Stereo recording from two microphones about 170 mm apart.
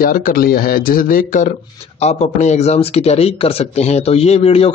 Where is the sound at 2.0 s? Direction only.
40° left (ahead or behind).